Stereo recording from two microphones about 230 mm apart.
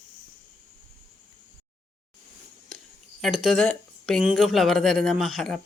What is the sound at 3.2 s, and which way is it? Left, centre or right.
Speech, centre.